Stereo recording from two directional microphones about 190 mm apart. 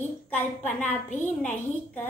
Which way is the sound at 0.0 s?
10° left (ahead or behind).